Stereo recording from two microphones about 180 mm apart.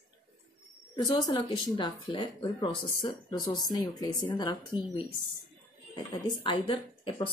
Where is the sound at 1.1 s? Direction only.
20° left (ahead or behind).